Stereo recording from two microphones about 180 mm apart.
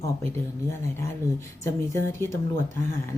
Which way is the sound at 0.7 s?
15° left (ahead or behind).